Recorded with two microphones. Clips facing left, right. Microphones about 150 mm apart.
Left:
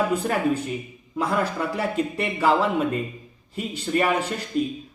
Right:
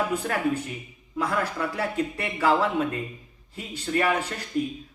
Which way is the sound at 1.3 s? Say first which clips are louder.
Left 4 dB; 20° left (ahead or behind).